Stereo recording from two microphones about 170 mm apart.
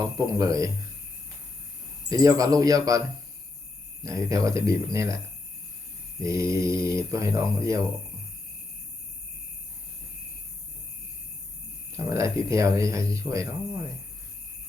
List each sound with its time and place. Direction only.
0.3 s speech: 20° right (ahead or behind)
2.0 s speech: 20° right (ahead or behind)
4.0 s speech: 20° right (ahead or behind)
6.2 s speech: 20° right (ahead or behind)
11.9 s speech: 20° right (ahead or behind)